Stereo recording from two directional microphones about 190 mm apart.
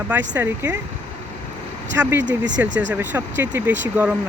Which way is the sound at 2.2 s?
70° right (ahead or behind).